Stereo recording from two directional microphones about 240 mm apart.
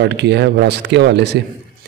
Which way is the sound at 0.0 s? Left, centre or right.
Right.